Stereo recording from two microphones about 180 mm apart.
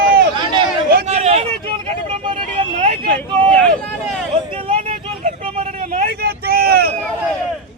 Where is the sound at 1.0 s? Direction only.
35° right (ahead or behind).